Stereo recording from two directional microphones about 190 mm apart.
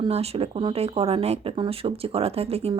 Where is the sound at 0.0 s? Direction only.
30° right (ahead or behind).